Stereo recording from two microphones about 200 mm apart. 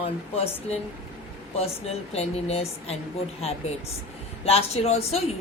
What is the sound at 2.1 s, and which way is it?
Speech, 30° left (ahead or behind).